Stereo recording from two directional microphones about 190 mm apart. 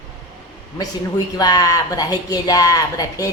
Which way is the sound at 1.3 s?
20° left (ahead or behind).